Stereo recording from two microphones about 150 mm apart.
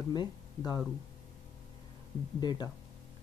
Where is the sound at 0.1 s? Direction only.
25° left (ahead or behind).